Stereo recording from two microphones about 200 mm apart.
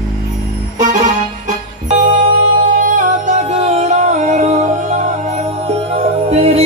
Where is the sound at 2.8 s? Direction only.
40° right (ahead or behind).